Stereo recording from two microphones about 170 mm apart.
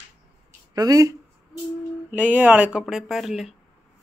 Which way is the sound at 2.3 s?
10° right (ahead or behind).